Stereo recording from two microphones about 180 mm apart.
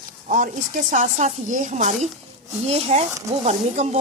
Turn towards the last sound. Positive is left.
turn(degrees=-40)  # may be behind; listen again after turning